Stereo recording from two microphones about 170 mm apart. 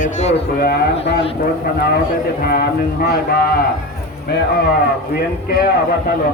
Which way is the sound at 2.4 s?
60° left (ahead or behind).